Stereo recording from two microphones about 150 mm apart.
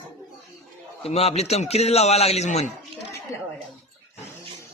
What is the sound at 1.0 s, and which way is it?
A man's voice, 45° left (ahead or behind).